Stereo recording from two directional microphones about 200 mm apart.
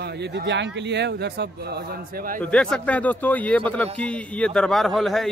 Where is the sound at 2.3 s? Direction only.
5° left (ahead or behind).